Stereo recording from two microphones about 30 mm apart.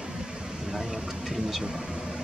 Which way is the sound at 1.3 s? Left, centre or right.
Centre.